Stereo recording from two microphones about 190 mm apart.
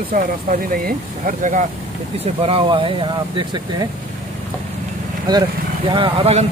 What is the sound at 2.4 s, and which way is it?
Speech, 30° right (ahead or behind).